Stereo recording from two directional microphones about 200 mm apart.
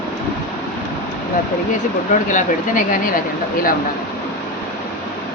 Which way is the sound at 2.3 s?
40° left (ahead or behind).